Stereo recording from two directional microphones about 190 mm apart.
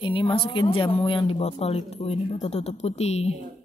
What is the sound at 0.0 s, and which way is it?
A woman's voice, 25° left (ahead or behind).